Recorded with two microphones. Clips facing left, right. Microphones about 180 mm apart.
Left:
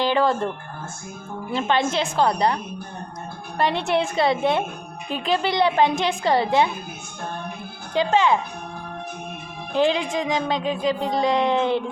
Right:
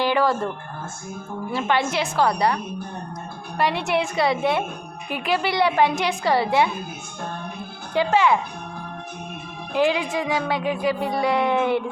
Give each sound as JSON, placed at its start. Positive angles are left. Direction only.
{"t": 0.0, "sound": "a woman's voice", "side_deg": 20}
{"t": 1.5, "sound": "a woman's voice", "side_deg": 20}
{"t": 3.6, "sound": "a woman's voice", "side_deg": 25}
{"t": 7.9, "sound": "a woman's voice", "side_deg": 20}
{"t": 9.8, "sound": "a woman's voice", "side_deg": 20}